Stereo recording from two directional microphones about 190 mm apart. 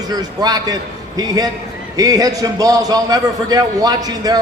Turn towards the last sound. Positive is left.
turn(degrees=-20)  # may be behind; listen again after turning